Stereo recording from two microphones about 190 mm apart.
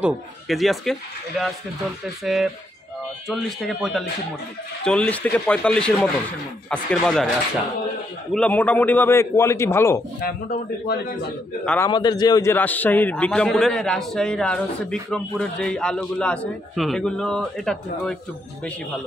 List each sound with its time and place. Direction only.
0.0 s a man's voice: centre (ahead or behind)
8.3 s a man's voice: 5° left (ahead or behind)
10.2 s a man's voice: 55° left (ahead or behind)
11.6 s a man's voice: 5° left (ahead or behind)
11.9 s a man's voice: 20° left (ahead or behind); by 18.1 s centre (ahead or behind)